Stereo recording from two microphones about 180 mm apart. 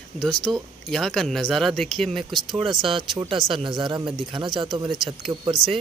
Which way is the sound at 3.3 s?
30° right (ahead or behind).